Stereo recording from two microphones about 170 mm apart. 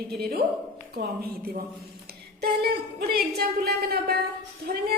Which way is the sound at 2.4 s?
70° right (ahead or behind).